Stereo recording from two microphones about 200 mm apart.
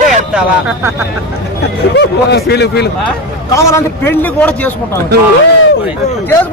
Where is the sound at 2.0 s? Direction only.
55° left (ahead or behind).